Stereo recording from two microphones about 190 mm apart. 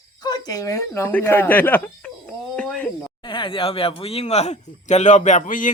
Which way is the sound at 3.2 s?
25° left (ahead or behind).